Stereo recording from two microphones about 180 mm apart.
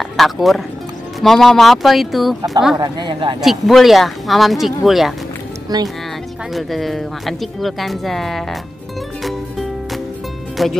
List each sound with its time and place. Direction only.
0.2 s speech: centre (ahead or behind)
2.8 s speech: 25° right (ahead or behind)
3.3 s speech: centre (ahead or behind)
5.7 s speech: 20° right (ahead or behind)
6.5 s speech: centre (ahead or behind)
10.6 s speech: centre (ahead or behind)